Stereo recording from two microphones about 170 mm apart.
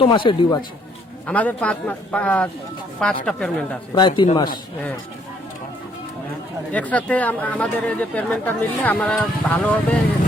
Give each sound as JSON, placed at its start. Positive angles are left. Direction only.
{"t": 0.0, "sound": "speech", "side_deg": 30}
{"t": 1.3, "sound": "speech", "side_deg": 10}
{"t": 3.9, "sound": "speech", "side_deg": 25}
{"t": 6.7, "sound": "speech", "side_deg": 10}